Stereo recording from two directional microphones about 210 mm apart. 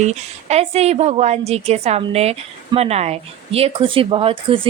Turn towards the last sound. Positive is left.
turn(degrees=-25)  # may be behind; listen again after turning